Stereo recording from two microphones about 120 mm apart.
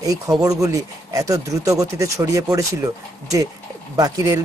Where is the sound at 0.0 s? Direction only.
30° right (ahead or behind).